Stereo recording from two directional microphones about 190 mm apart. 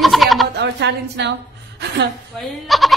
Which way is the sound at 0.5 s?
65° right (ahead or behind).